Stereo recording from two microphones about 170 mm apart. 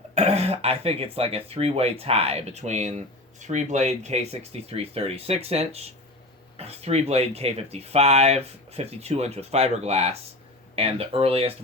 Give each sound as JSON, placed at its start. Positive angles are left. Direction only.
{"t": 0.1, "sound": "speech", "side_deg": -40}